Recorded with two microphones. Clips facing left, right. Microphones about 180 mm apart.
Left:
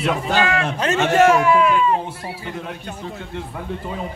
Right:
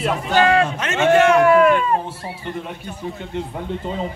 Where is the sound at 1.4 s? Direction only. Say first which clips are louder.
Right 3 dB; 50° right (ahead or behind).